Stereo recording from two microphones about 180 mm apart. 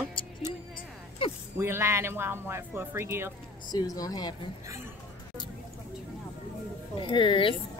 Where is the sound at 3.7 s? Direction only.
20° left (ahead or behind).